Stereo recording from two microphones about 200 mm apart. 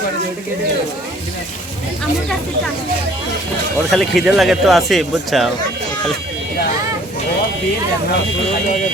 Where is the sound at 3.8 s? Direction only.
Centre (ahead or behind).